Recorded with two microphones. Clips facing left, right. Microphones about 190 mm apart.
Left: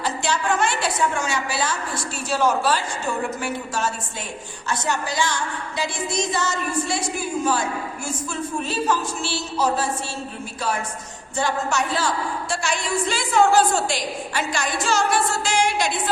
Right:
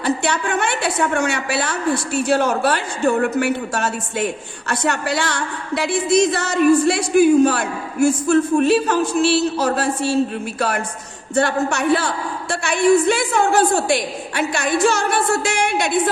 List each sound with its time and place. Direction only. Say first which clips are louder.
0.0 s a woman's voice: right 4 dB; 60° right (ahead or behind)
11.3 s a woman's voice: right 5 dB; 60° right (ahead or behind)